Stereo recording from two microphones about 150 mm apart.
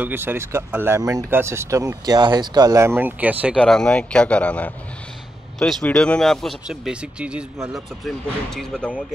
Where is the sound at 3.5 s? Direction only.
5° left (ahead or behind).